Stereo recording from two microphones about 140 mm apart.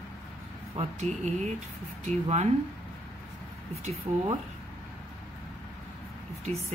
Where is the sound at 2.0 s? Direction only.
55° right (ahead or behind).